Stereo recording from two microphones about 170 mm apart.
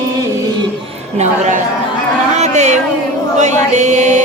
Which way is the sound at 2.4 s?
45° right (ahead or behind).